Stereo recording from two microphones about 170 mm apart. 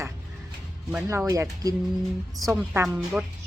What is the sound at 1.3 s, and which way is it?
Speech, 20° right (ahead or behind).